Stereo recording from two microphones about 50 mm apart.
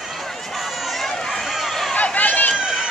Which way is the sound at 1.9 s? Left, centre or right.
Left.